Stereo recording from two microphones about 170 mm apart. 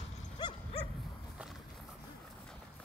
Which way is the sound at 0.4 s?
30° left (ahead or behind).